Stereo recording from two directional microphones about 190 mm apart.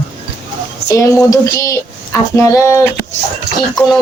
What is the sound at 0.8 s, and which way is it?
Speech, 15° left (ahead or behind).